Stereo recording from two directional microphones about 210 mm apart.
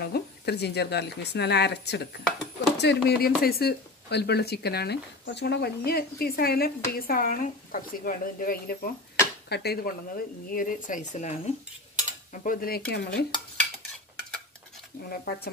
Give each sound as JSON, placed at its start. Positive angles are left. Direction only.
{"t": 0.0, "sound": "speech", "side_deg": 50}
{"t": 12.3, "sound": "cutlery", "side_deg": 40}
{"t": 12.9, "sound": "speech", "side_deg": 50}
{"t": 15.0, "sound": "speech", "side_deg": 45}